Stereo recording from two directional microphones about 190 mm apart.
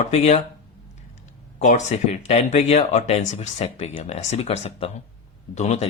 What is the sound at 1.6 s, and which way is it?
Speech, 40° left (ahead or behind).